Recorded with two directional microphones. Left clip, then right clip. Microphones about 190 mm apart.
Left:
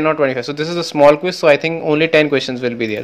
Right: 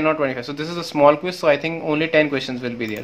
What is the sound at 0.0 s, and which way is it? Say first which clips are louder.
Speech: left 5 dB; 25° left (ahead or behind).